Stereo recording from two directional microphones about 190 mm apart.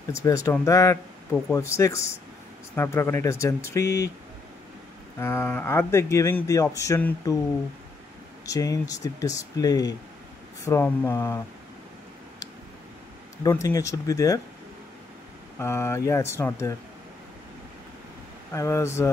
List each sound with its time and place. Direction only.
0.1 s speech: 15° left (ahead or behind)
5.2 s speech: 15° left (ahead or behind)
8.5 s speech: 20° left (ahead or behind)
13.4 s speech: 15° left (ahead or behind)
15.6 s speech: 15° left (ahead or behind)
18.5 s speech: 15° left (ahead or behind)